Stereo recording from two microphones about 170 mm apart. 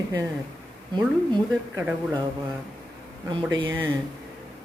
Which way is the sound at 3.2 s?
25° right (ahead or behind).